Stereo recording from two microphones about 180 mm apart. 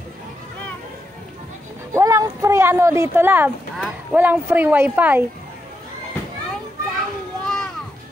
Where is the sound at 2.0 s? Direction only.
15° right (ahead or behind).